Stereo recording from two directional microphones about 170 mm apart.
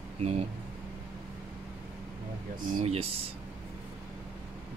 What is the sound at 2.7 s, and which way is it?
Speech, 40° right (ahead or behind).